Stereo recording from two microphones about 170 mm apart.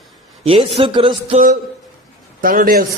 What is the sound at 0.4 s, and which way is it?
Speech, 35° right (ahead or behind).